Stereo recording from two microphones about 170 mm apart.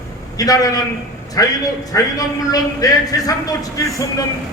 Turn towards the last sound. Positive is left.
turn(degrees=20)  # may be behind; listen again after turning